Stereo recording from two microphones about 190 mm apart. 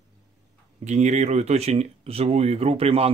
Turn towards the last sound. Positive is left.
turn(degrees=-30)  # may be behind; listen again after turning